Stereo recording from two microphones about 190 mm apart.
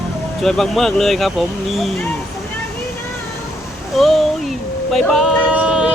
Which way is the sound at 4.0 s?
Centre (ahead or behind).